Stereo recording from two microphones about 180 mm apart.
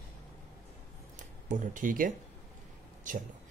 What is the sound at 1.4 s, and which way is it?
Speech, 45° right (ahead or behind).